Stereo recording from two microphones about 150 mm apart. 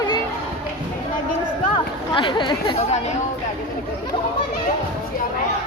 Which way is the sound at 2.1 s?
30° left (ahead or behind).